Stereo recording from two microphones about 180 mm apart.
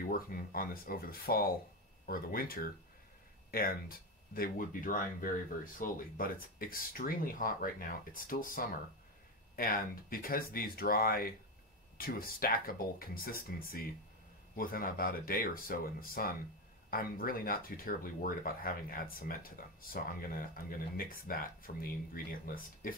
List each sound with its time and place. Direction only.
0.0 s speech: 55° left (ahead or behind)
4.3 s speech: 50° left (ahead or behind)